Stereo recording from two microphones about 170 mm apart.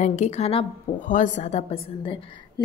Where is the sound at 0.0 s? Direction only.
45° left (ahead or behind).